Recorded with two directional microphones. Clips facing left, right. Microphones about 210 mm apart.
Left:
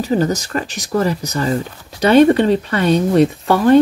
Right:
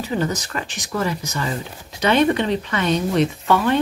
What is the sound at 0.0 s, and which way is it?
Speech, 40° left (ahead or behind).